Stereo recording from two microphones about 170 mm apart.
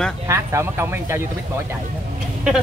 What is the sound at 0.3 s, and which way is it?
Speech, 15° right (ahead or behind).